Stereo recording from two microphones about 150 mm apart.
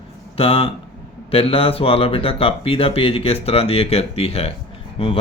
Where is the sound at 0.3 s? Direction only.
40° left (ahead or behind).